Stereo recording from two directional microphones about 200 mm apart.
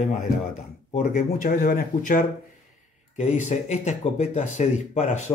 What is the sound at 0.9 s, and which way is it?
Speech, 40° left (ahead or behind).